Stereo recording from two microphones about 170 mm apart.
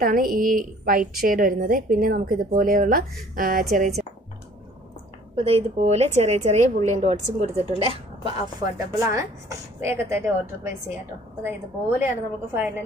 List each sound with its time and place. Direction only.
0.0 s speech: 55° right (ahead or behind)
5.3 s a woman's voice: 35° right (ahead or behind); by 12.8 s 10° right (ahead or behind)